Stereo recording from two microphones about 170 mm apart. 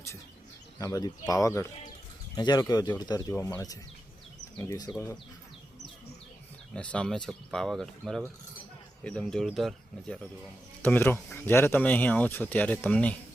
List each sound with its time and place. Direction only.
0.8 s speech: 20° left (ahead or behind)
6.7 s speech: 5° left (ahead or behind)